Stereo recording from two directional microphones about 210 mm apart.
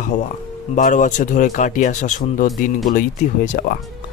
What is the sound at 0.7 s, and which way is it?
Speech, 40° left (ahead or behind).